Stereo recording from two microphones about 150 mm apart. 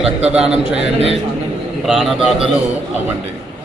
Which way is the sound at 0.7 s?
45° right (ahead or behind).